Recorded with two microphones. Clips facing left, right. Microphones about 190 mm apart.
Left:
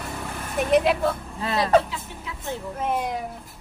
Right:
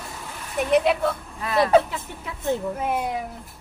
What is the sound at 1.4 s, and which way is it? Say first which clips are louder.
Speech: left 1 dB; 30° left (ahead or behind).